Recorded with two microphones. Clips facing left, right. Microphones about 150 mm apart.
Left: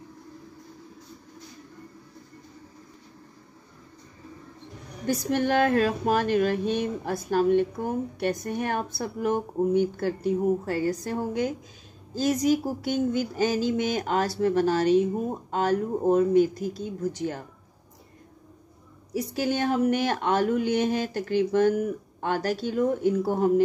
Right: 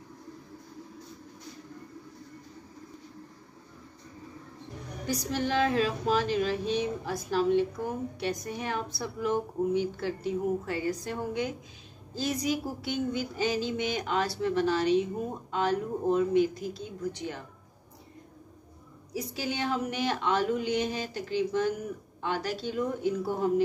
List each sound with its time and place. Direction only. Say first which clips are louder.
5.0 s speech: left 6 dB; 55° left (ahead or behind)
19.1 s speech: left 7 dB; 55° left (ahead or behind)